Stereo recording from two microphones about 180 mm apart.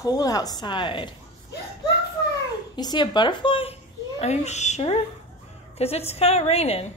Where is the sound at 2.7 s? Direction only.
25° left (ahead or behind).